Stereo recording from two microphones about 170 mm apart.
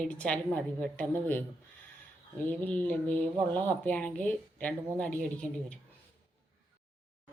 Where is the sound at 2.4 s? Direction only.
10° left (ahead or behind).